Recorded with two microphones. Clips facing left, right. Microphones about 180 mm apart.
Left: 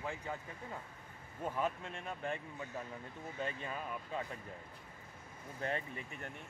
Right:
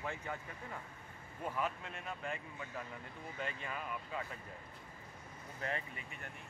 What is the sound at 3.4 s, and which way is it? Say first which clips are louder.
Speech: left 2 dB; 30° left (ahead or behind).